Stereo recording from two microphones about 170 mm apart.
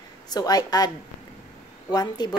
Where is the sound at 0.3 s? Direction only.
20° left (ahead or behind).